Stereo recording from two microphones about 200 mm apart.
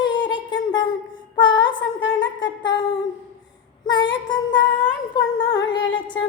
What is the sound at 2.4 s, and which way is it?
Humming, 20° left (ahead or behind).